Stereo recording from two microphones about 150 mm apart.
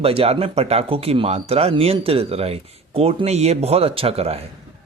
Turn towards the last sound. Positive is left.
turn(degrees=-40)  # may be behind; listen again after turning